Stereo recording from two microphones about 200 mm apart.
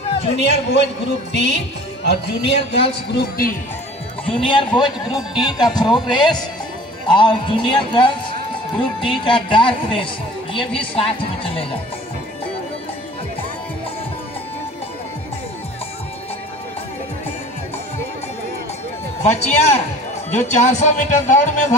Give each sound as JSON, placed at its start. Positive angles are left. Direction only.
{"t": 0.4, "sound": "speech", "side_deg": 60}
{"t": 2.0, "sound": "a man's voice", "side_deg": 60}
{"t": 4.3, "sound": "a man's voice", "side_deg": 25}
{"t": 19.2, "sound": "speech", "side_deg": 35}